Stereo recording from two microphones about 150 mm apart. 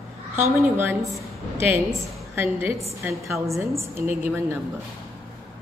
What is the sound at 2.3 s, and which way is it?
Speech, 15° right (ahead or behind).